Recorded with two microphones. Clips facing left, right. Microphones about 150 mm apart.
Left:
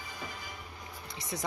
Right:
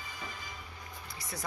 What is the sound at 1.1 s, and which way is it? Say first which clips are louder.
Speech: left 5 dB; 20° left (ahead or behind).